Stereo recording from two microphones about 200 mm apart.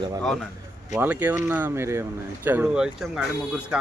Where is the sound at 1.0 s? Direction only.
10° right (ahead or behind).